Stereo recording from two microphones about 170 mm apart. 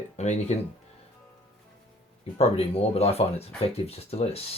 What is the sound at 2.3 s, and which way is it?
Speech, 35° left (ahead or behind).